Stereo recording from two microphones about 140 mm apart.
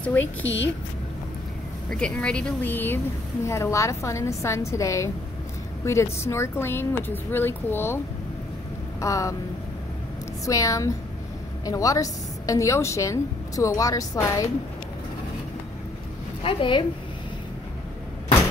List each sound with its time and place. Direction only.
0.0 s speech: 10° left (ahead or behind)
1.9 s a woman's voice: 5° left (ahead or behind)
9.0 s a woman's voice: 25° left (ahead or behind)
10.4 s a woman's voice: 25° left (ahead or behind)
16.4 s a woman's voice: 35° left (ahead or behind)